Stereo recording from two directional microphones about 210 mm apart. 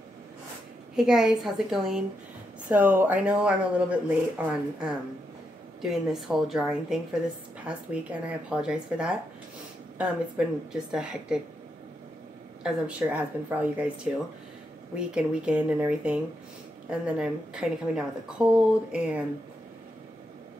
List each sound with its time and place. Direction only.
0.9 s a woman's voice: 5° right (ahead or behind)
12.6 s speech: 5° right (ahead or behind)
15.0 s a woman's voice: 5° right (ahead or behind)